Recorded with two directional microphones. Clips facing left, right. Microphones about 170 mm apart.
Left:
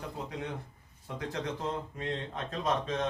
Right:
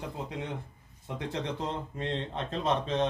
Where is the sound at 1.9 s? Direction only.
25° right (ahead or behind).